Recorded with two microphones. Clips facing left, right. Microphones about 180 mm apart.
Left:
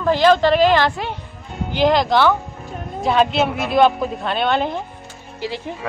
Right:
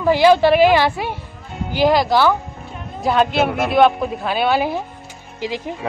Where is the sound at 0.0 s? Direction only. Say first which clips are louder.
Right 2 dB; 10° right (ahead or behind).